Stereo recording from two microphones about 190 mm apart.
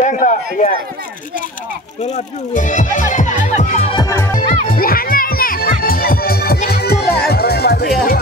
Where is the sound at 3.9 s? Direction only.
15° left (ahead or behind).